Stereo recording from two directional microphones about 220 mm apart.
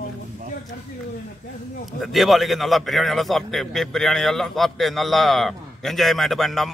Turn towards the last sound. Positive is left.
turn(degrees=0)  # may be behind; listen again after turning